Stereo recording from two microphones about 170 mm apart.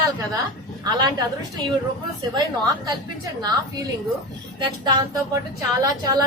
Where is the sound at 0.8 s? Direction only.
20° right (ahead or behind).